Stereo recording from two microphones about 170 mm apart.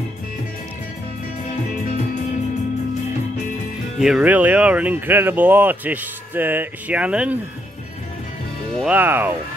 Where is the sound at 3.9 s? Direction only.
5° right (ahead or behind).